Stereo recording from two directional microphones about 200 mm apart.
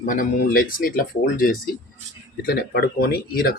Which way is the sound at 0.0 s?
40° left (ahead or behind).